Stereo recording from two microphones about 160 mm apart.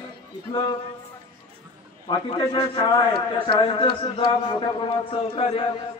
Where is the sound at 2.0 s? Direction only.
30° left (ahead or behind).